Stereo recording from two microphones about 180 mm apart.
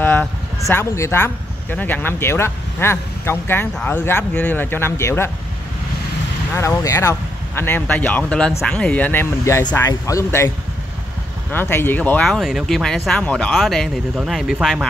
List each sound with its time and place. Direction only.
0.0 s speech: 10° left (ahead or behind)
6.5 s speech: 15° left (ahead or behind)
11.5 s speech: 10° left (ahead or behind)